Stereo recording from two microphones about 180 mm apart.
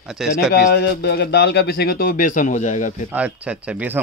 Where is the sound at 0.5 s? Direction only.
65° left (ahead or behind); by 2.9 s 45° left (ahead or behind).